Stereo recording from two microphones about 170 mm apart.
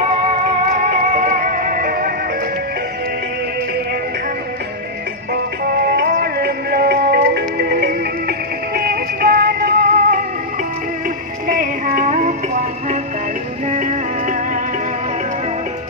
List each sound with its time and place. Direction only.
1.1 s music: 50° right (ahead or behind)
5.7 s music: 65° right (ahead or behind)
11.4 s music: 50° right (ahead or behind)